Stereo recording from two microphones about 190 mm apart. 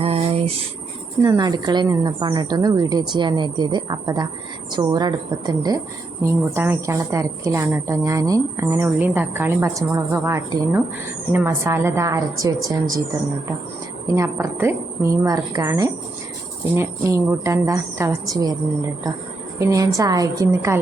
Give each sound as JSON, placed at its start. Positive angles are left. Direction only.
{"t": 0.0, "sound": "a sound", "side_deg": -30}
{"t": 1.2, "sound": "a woman's voice", "side_deg": -20}
{"t": 14.2, "sound": "a woman's voice", "side_deg": -15}
{"t": 19.5, "sound": "a woman's voice", "side_deg": -15}